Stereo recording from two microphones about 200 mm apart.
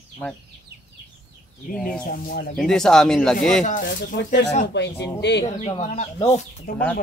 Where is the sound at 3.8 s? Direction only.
60° left (ahead or behind).